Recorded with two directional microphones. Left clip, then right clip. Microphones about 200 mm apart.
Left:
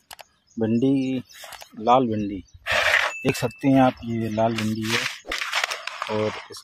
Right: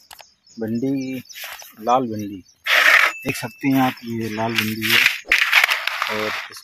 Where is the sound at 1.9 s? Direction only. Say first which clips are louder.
Even; 20° left (ahead or behind).